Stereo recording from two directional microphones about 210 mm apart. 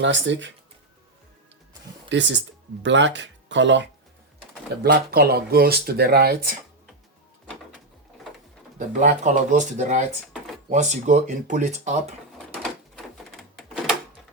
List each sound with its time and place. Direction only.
0.0 s speech: 60° right (ahead or behind)
2.0 s speech: 60° right (ahead or behind)
4.8 s speech: 50° right (ahead or behind)
9.0 s speech: 35° right (ahead or behind)
13.3 s a sound: centre (ahead or behind)